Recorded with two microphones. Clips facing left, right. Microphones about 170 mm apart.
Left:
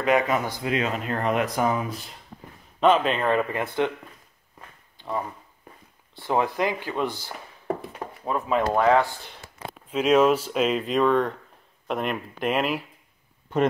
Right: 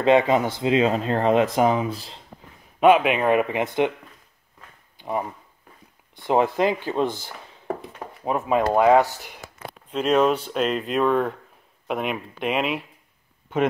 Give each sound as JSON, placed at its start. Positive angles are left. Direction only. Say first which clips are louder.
{"t": 0.0, "sound": "speech", "louder": "right 5 dB", "side_deg": -25}
{"t": 2.8, "sound": "speech", "louder": "right 4 dB", "side_deg": -10}
{"t": 4.9, "sound": "a sound", "louder": "right 3 dB", "side_deg": -15}
{"t": 6.1, "sound": "speech", "louder": "right 4 dB", "side_deg": -20}
{"t": 9.8, "sound": "speech", "louder": "left 1 dB", "side_deg": 5}